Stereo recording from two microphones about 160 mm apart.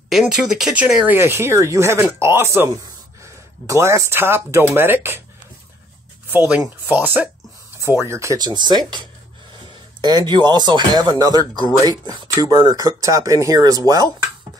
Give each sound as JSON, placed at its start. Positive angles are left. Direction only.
{"t": 0.1, "sound": "speech", "side_deg": -5}
{"t": 6.6, "sound": "speech", "side_deg": -10}
{"t": 10.0, "sound": "speech", "side_deg": -25}